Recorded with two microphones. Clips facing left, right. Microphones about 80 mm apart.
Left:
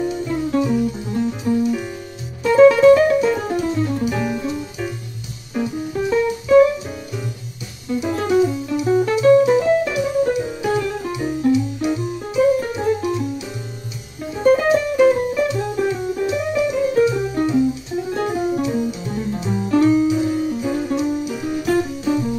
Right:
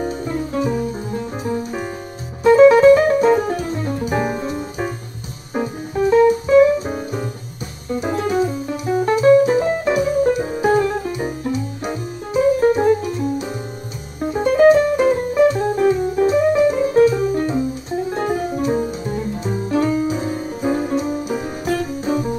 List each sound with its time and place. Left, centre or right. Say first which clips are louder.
0.0 s music: left 1 dB; right
14.2 s music: right 3 dB; right